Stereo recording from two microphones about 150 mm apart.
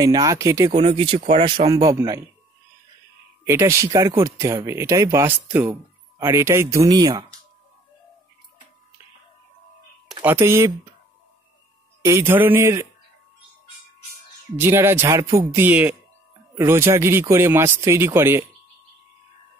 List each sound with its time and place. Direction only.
0.0 s speech: 25° right (ahead or behind)
0.7 s speech: 35° right (ahead or behind)
1.7 s speech: 25° right (ahead or behind)
3.4 s speech: 20° right (ahead or behind)
10.2 s speech: 15° right (ahead or behind)
12.0 s speech: 15° right (ahead or behind)
14.6 s speech: 15° right (ahead or behind)